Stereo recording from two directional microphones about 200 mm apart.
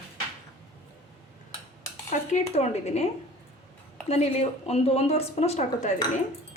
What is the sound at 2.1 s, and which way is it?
Speech, 35° left (ahead or behind).